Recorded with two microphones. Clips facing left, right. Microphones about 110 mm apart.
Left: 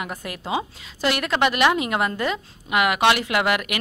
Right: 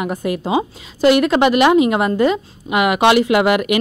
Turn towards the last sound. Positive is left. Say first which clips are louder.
# right 8 dB
turn(degrees=-15)  # may be behind; listen again after turning